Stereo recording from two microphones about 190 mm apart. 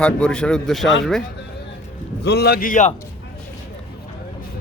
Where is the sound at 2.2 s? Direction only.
60° left (ahead or behind); by 2.9 s 40° left (ahead or behind).